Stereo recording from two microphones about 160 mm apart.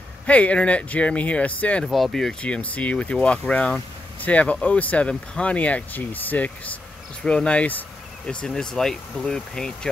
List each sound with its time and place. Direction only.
0.3 s speech: 10° left (ahead or behind)